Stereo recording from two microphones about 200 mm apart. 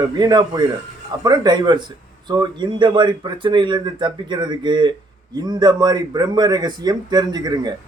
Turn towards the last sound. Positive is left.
turn(degrees=-20)  # may be behind; listen again after turning